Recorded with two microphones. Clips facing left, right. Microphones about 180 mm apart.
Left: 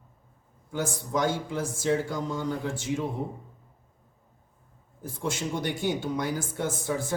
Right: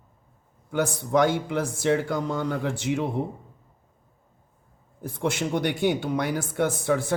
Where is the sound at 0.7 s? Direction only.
65° right (ahead or behind).